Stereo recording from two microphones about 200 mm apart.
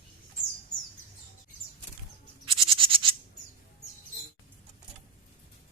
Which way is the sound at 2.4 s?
25° right (ahead or behind).